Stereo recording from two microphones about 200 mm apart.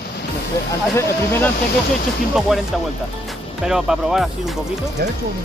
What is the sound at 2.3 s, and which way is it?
Speech, centre (ahead or behind).